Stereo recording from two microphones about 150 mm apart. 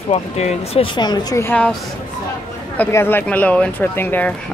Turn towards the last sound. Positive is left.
turn(degrees=15)  # may be behind; listen again after turning